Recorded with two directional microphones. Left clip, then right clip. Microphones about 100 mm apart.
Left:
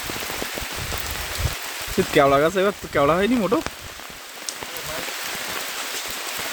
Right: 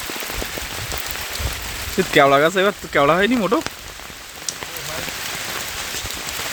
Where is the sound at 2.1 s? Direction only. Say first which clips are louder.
Right 3 dB; centre (ahead or behind).